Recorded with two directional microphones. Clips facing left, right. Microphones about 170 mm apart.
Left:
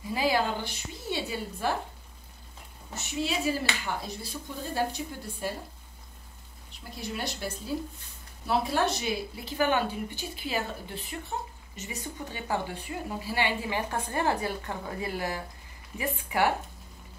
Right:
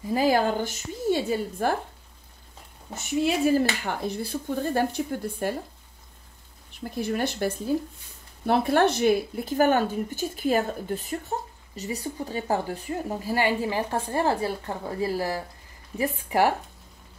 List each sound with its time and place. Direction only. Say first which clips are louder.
0.1 s speech: right 5 dB; 45° right (ahead or behind)
3.3 s speech: right 8 dB; 50° right (ahead or behind)
6.8 s speech: right 9 dB; 50° right (ahead or behind)